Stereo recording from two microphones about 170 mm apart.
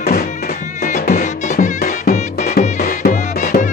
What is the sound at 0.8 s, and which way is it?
Music, 45° left (ahead or behind).